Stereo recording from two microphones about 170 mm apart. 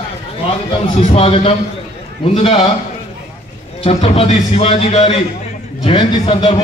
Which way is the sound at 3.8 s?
35° left (ahead or behind).